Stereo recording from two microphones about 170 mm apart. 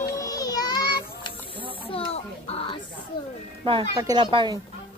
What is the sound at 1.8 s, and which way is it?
Speech, 30° left (ahead or behind).